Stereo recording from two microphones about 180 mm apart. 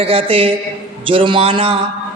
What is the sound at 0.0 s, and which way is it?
A man's voice, 30° right (ahead or behind).